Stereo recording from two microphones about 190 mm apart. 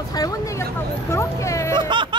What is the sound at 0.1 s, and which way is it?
Speech, 20° left (ahead or behind).